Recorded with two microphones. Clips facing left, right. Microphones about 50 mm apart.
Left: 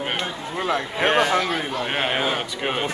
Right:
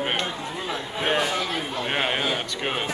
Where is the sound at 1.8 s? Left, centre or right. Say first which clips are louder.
Even; centre.